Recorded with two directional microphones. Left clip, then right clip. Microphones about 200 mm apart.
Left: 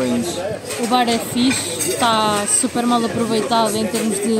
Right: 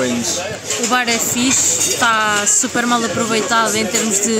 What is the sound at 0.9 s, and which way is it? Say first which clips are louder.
A woman's voice: even; 5° right (ahead or behind).